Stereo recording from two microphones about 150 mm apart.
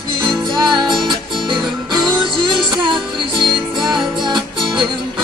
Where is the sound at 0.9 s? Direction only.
Centre (ahead or behind).